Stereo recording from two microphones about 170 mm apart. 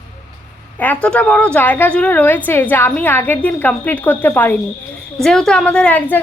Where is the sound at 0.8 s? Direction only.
10° left (ahead or behind).